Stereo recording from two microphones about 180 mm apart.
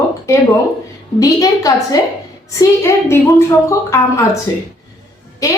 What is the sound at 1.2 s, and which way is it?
A woman's voice, 20° left (ahead or behind).